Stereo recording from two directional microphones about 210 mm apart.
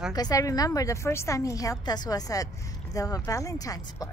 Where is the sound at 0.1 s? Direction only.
15° left (ahead or behind).